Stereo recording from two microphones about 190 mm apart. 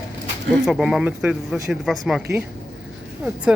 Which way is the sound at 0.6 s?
Centre (ahead or behind).